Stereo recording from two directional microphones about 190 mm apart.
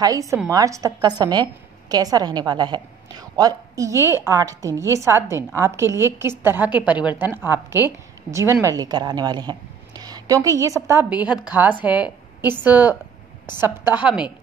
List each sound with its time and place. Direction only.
0.0 s a woman's voice: 20° right (ahead or behind)